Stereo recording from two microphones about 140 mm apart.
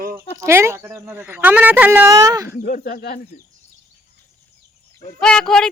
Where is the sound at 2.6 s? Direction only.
90° left.